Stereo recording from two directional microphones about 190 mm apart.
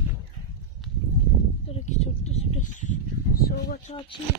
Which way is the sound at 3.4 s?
50° left (ahead or behind).